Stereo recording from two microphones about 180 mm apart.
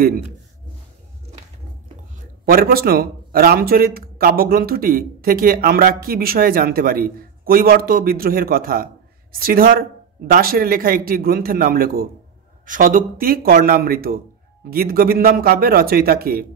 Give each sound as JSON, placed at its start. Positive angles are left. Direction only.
{"t": 2.4, "sound": "a man's voice", "side_deg": -55}